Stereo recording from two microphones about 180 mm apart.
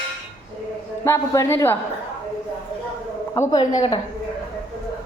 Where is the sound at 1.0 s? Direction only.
15° left (ahead or behind).